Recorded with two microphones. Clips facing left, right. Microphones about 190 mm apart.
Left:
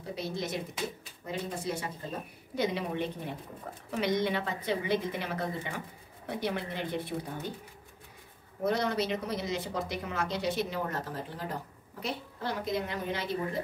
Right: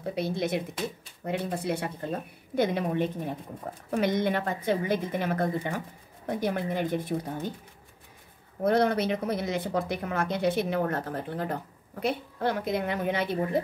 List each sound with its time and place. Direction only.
0.1 s a woman's voice: 60° right (ahead or behind)
8.6 s speech: 55° right (ahead or behind)